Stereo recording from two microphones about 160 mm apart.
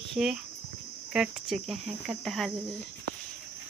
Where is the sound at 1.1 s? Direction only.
5° right (ahead or behind).